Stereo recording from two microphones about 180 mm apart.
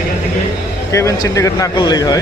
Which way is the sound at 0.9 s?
15° left (ahead or behind).